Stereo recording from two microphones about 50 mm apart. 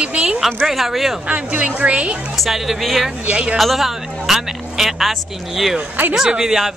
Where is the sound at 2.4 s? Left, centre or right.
Centre.